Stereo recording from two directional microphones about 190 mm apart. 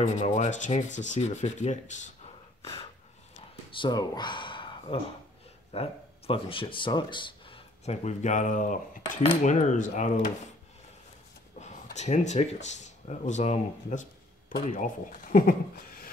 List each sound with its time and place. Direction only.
0.0 s rub: 40° left (ahead or behind)
3.7 s speech: 25° left (ahead or behind); by 8.7 s 40° left (ahead or behind)
9.3 s rub: 40° left (ahead or behind)
11.6 s speech: 35° left (ahead or behind)